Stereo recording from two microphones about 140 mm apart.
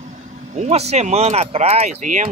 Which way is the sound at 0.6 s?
50° right (ahead or behind).